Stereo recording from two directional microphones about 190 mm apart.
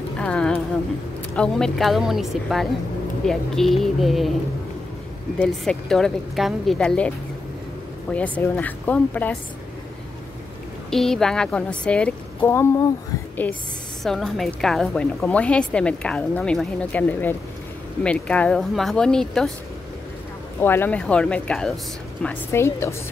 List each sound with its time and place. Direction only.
0.2 s a woman's voice: 5° left (ahead or behind)
5.4 s a woman's voice: 5° left (ahead or behind)
8.1 s a woman's voice: 10° left (ahead or behind)
10.9 s a woman's voice: centre (ahead or behind)
14.0 s a woman's voice: centre (ahead or behind)
20.6 s a woman's voice: 10° left (ahead or behind)